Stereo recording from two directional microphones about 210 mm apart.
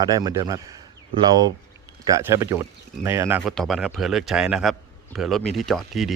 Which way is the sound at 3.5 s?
Centre (ahead or behind).